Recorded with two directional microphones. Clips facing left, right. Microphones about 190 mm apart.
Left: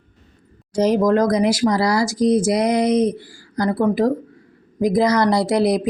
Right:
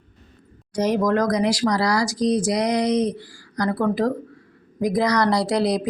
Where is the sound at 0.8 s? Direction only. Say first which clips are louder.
Left 4 dB; 30° left (ahead or behind).